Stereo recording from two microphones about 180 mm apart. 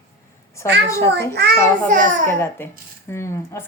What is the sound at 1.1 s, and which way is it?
Speech, 70° right (ahead or behind).